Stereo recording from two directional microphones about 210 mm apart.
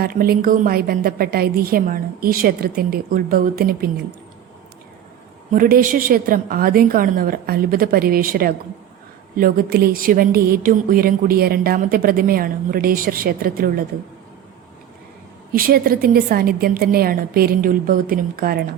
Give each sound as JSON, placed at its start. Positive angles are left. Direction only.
{"t": 0.0, "sound": "speech", "side_deg": -45}
{"t": 5.5, "sound": "speech", "side_deg": -40}
{"t": 15.5, "sound": "speech", "side_deg": -45}